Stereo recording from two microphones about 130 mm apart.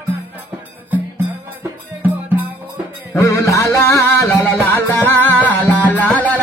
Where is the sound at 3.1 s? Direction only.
20° left (ahead or behind).